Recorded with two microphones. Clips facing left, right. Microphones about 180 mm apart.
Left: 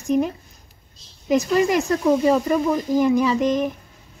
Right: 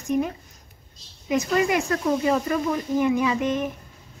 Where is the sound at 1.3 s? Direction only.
35° left (ahead or behind).